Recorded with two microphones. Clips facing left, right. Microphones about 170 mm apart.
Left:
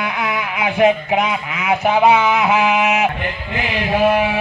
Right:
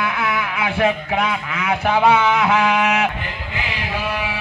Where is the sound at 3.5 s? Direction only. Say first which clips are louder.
Left 7 dB; 50° left (ahead or behind).